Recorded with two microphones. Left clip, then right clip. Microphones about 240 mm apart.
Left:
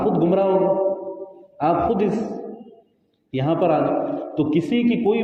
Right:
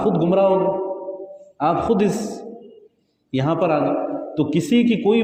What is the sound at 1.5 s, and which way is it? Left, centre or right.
Speech, right.